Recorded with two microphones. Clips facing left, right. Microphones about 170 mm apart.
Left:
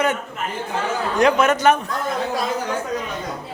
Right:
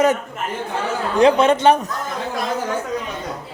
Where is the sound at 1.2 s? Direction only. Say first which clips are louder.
Right 3 dB; 30° right (ahead or behind).